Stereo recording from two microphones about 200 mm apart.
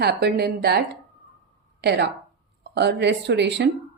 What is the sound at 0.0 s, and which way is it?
A woman's voice, 55° right (ahead or behind).